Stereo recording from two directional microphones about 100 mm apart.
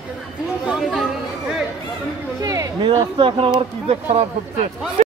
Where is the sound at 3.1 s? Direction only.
60° right (ahead or behind).